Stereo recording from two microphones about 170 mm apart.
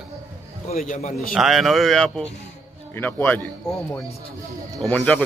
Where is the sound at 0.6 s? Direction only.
40° left (ahead or behind).